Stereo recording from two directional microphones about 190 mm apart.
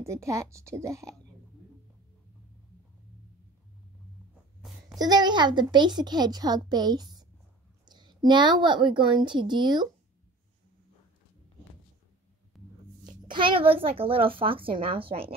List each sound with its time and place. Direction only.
0.0 s a woman's voice: 15° right (ahead or behind)
4.8 s a woman's voice: 20° right (ahead or behind)
12.6 s music: centre (ahead or behind)
13.0 s a woman's voice: 25° right (ahead or behind)